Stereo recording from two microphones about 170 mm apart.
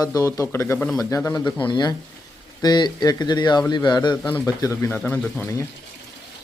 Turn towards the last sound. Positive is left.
turn(degrees=15)  # may be behind; listen again after turning